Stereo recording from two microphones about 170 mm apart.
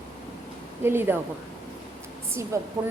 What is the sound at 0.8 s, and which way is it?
Speech, 15° right (ahead or behind).